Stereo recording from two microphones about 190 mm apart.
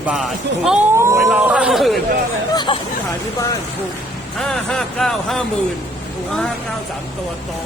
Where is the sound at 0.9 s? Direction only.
15° right (ahead or behind).